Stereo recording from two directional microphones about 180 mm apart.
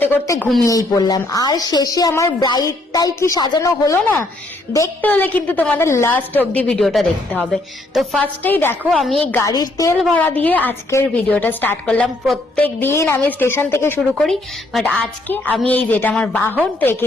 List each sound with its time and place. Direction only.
0.0 s a woman's voice: 10° left (ahead or behind)
0.6 s a woman's voice: 20° left (ahead or behind)
10.0 s a woman's voice: 5° left (ahead or behind)
14.2 s a woman's voice: centre (ahead or behind)